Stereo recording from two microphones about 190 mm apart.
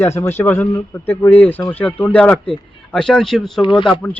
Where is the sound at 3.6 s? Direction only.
25° left (ahead or behind).